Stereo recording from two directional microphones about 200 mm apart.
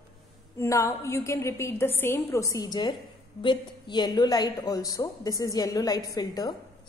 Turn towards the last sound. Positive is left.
turn(degrees=20)  # may be behind; listen again after turning